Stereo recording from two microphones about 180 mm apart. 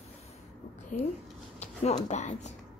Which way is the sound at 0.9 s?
45° left (ahead or behind).